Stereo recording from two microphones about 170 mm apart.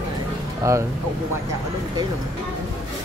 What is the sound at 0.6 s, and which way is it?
Speech, 15° right (ahead or behind).